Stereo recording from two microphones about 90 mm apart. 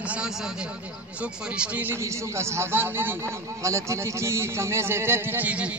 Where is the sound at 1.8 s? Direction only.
30° right (ahead or behind).